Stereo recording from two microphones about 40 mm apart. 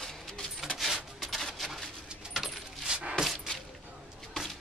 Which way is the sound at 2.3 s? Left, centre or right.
Centre.